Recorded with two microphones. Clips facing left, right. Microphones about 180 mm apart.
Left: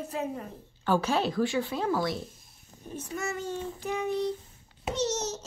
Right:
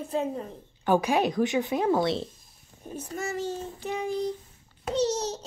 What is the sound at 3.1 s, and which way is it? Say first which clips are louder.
Child singing: right 2 dB; 30° right (ahead or behind).